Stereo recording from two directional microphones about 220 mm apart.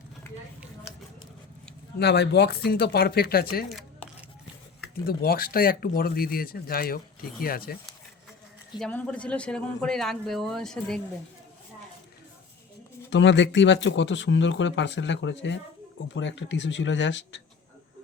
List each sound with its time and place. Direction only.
2.0 s speech: 50° left (ahead or behind)
3.7 s a sound: centre (ahead or behind)
5.0 s speech: 45° left (ahead or behind)
8.8 s speech: 5° left (ahead or behind)
13.1 s speech: 55° left (ahead or behind)